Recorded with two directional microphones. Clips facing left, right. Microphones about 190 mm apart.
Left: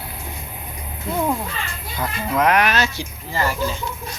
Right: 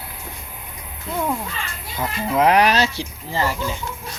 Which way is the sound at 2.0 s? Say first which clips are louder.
Right 2 dB; 30° right (ahead or behind).